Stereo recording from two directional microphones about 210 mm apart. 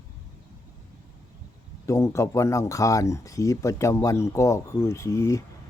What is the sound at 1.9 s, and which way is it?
Speech, 15° left (ahead or behind).